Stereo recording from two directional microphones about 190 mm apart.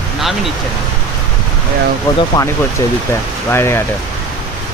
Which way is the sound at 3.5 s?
10° left (ahead or behind).